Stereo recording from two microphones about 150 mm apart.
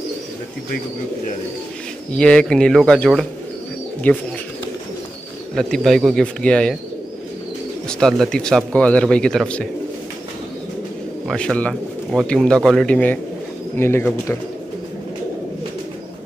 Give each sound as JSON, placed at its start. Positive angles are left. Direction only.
{"t": 2.1, "sound": "speech", "side_deg": 5}
{"t": 5.6, "sound": "speech", "side_deg": 0}
{"t": 8.0, "sound": "speech", "side_deg": 5}
{"t": 11.2, "sound": "speech", "side_deg": 5}